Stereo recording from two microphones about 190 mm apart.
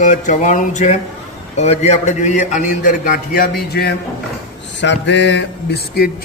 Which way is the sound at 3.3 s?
55° left (ahead or behind).